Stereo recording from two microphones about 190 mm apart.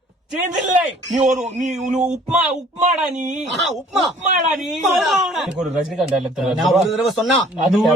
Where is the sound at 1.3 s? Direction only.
40° right (ahead or behind).